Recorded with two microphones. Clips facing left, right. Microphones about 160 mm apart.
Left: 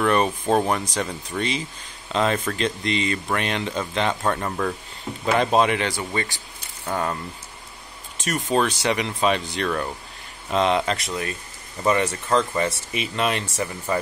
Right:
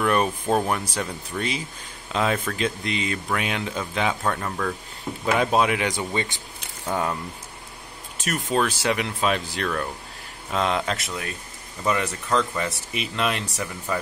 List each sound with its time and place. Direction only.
0.0 s speech: 5° right (ahead or behind)
4.2 s speech: 5° left (ahead or behind)
5.2 s speech: 5° right (ahead or behind)
5.9 s speech: 20° right (ahead or behind)
6.9 s speech: 5° right (ahead or behind)
8.5 s speech: centre (ahead or behind)